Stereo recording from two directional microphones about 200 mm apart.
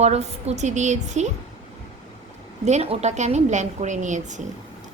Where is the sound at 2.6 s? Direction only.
35° right (ahead or behind).